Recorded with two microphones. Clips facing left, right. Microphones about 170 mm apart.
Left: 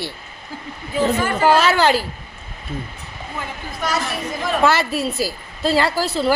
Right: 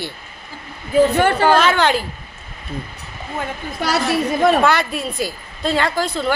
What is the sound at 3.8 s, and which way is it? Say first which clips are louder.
Speech: right 5 dB; 70° right (ahead or behind).